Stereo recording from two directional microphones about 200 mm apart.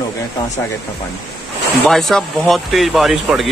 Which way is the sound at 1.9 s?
Centre (ahead or behind).